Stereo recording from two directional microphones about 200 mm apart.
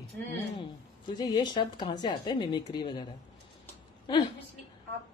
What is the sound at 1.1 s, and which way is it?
A woman's voice, 20° left (ahead or behind).